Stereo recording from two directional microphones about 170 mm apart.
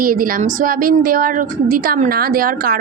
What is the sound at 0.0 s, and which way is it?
A woman's voice, 55° right (ahead or behind).